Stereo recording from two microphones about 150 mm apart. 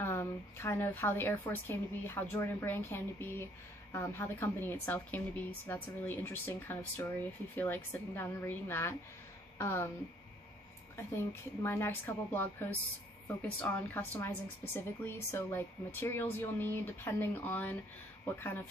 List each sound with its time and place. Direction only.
0.0 s a woman's voice: 15° left (ahead or behind)
11.6 s a woman's voice: 15° left (ahead or behind)